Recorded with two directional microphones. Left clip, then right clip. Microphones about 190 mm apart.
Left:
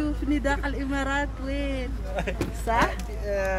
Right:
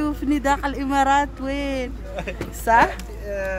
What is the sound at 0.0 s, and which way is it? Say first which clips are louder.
Speech: right 5 dB; 55° right (ahead or behind).